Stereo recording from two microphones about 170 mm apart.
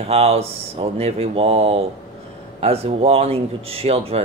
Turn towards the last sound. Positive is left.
turn(degrees=-35)  # may be behind; listen again after turning